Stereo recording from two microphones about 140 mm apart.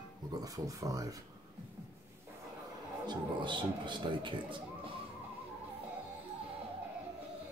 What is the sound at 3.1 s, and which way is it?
A man's voice, 35° right (ahead or behind).